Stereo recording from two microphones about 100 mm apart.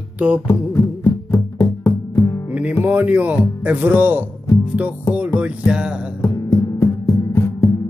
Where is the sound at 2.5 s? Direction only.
15° right (ahead or behind).